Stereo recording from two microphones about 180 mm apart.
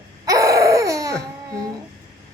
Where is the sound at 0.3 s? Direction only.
20° right (ahead or behind).